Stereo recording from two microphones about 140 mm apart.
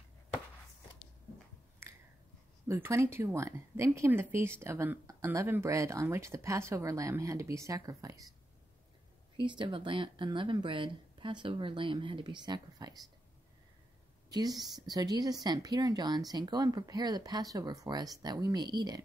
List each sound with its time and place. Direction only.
1.8 s finger snapping: 20° right (ahead or behind)
2.7 s speech: 20° right (ahead or behind)
9.4 s speech: 35° right (ahead or behind)
14.3 s speech: 25° right (ahead or behind)